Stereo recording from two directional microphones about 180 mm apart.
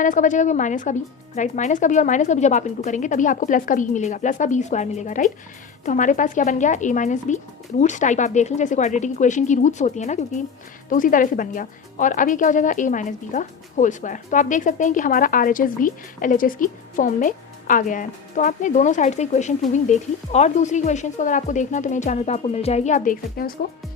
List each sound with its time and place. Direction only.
0.0 s speech: 45° left (ahead or behind)